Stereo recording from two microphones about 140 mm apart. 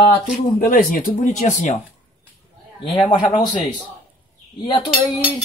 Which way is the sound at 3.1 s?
30° left (ahead or behind).